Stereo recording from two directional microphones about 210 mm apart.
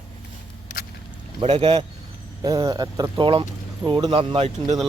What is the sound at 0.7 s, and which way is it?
Vehicle, 40° left (ahead or behind).